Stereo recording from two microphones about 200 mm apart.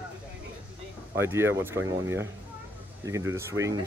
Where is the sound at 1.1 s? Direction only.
10° right (ahead or behind).